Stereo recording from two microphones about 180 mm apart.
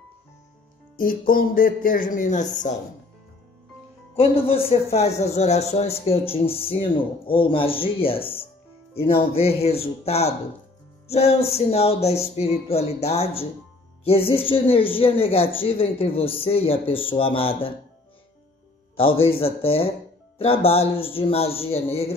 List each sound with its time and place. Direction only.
0.9 s speech: 50° left (ahead or behind)
4.6 s speech: 35° left (ahead or behind)
19.0 s speech: 30° left (ahead or behind)